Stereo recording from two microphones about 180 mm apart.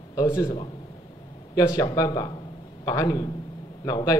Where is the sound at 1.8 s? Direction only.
20° left (ahead or behind).